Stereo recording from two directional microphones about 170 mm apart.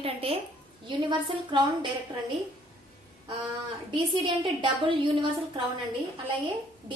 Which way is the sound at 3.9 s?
30° right (ahead or behind).